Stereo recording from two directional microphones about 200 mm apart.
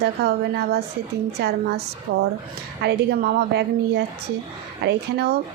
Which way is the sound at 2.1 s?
55° right (ahead or behind).